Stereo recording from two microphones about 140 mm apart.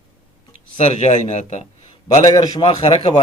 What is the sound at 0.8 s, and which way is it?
Speech, 50° left (ahead or behind).